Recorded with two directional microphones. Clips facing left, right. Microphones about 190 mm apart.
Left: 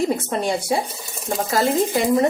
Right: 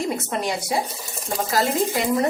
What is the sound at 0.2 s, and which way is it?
Speech, 30° left (ahead or behind).